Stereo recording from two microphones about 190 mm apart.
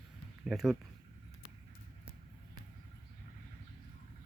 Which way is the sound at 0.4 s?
Centre (ahead or behind).